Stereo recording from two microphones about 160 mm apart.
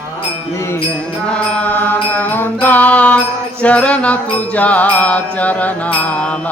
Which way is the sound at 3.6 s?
10° left (ahead or behind).